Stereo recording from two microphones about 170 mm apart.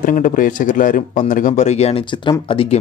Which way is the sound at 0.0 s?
50° left (ahead or behind).